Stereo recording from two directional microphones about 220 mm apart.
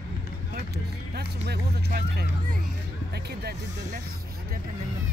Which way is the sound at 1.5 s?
50° right (ahead or behind).